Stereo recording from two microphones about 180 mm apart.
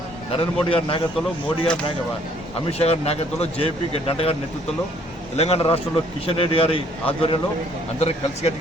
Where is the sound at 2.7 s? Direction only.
35° left (ahead or behind).